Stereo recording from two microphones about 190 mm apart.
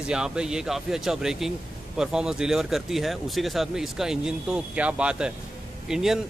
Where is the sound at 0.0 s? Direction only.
5° right (ahead or behind).